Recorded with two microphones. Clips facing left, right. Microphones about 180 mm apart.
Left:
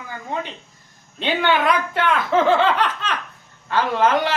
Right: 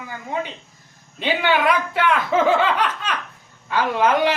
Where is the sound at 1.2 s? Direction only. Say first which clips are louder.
Even; 10° right (ahead or behind).